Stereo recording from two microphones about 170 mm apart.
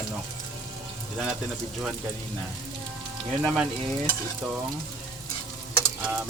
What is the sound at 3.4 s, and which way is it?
Speech, centre (ahead or behind).